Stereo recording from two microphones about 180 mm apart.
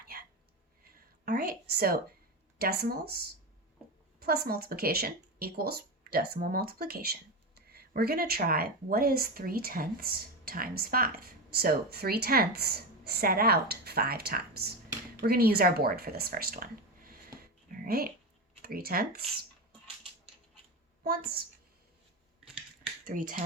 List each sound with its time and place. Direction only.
1.2 s a woman's voice: 55° right (ahead or behind)
21.0 s speech: 55° right (ahead or behind)
23.0 s speech: 50° right (ahead or behind)